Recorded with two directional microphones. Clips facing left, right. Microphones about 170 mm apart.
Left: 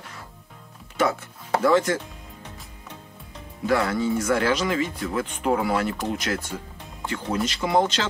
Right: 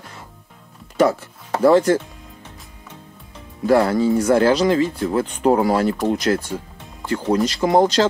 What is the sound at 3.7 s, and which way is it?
Speech, 35° right (ahead or behind).